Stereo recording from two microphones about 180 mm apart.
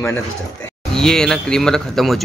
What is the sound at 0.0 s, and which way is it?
Speech, 15° left (ahead or behind).